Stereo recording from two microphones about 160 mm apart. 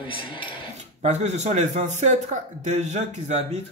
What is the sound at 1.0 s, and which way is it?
A man's voice, 45° right (ahead or behind).